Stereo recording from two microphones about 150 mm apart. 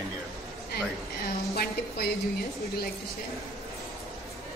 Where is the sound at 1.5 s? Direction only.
90° left.